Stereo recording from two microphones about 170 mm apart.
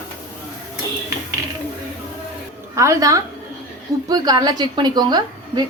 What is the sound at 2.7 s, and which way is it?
A woman's voice, 20° right (ahead or behind).